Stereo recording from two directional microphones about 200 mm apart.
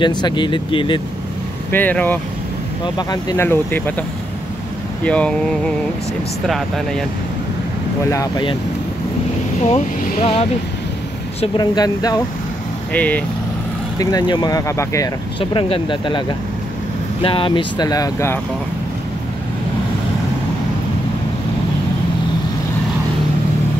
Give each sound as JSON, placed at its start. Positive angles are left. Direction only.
{"t": 0.0, "sound": "speech", "side_deg": 20}
{"t": 1.7, "sound": "speech", "side_deg": 10}
{"t": 2.8, "sound": "speech", "side_deg": 20}
{"t": 5.0, "sound": "speech", "side_deg": 5}
{"t": 8.1, "sound": "speech", "side_deg": 20}
{"t": 10.2, "sound": "speech", "side_deg": 30}
{"t": 11.4, "sound": "speech", "side_deg": 20}
{"t": 12.9, "sound": "speech", "side_deg": 5}
{"t": 13.9, "sound": "speech", "side_deg": 20}